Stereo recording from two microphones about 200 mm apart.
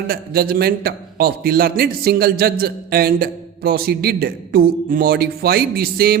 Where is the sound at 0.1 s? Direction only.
50° right (ahead or behind).